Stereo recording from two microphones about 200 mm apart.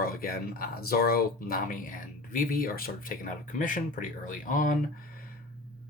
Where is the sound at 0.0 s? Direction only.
45° left (ahead or behind).